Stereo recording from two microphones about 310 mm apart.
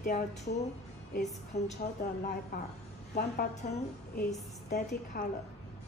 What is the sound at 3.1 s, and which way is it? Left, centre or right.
A woman's voice, left.